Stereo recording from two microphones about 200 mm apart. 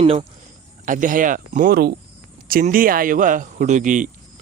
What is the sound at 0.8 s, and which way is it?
Speech, 40° right (ahead or behind).